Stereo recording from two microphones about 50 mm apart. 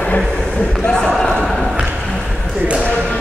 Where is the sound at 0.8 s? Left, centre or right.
Centre.